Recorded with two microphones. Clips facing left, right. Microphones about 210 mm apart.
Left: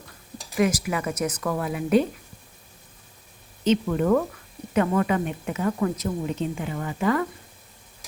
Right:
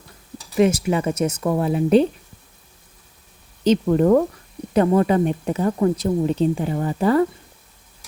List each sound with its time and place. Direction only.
0.5 s speech: 25° right (ahead or behind)
3.6 s a woman's voice: 35° right (ahead or behind)